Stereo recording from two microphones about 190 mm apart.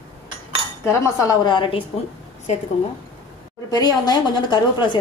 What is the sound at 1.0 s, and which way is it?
Speech, 20° left (ahead or behind).